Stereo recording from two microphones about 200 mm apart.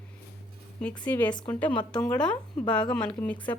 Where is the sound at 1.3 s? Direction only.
20° left (ahead or behind).